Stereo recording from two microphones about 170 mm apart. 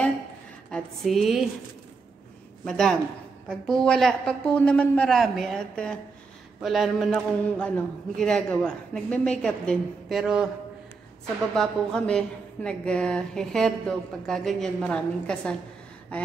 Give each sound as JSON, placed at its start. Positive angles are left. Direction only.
{"t": 0.7, "sound": "speech", "side_deg": 5}
{"t": 2.6, "sound": "speech", "side_deg": 5}
{"t": 11.5, "sound": "speech", "side_deg": 5}